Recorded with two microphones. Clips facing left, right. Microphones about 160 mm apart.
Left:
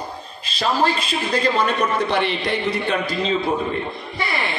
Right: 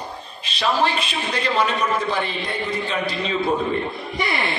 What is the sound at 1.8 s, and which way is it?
A man's voice, 70° left (ahead or behind).